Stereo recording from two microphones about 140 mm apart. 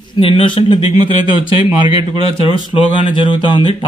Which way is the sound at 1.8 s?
30° right (ahead or behind).